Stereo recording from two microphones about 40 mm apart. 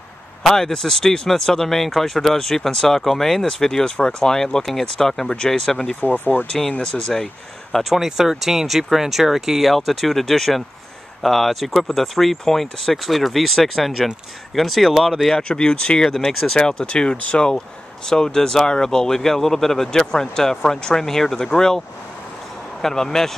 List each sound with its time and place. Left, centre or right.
0.4 s speech: centre
5.9 s speech: left
6.8 s speech: centre
7.9 s speech: centre
15.5 s speech: left